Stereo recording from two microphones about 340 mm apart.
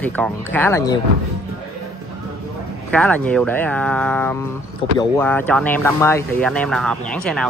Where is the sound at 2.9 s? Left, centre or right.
Centre.